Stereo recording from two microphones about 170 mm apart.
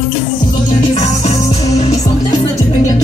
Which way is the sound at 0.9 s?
35° left (ahead or behind).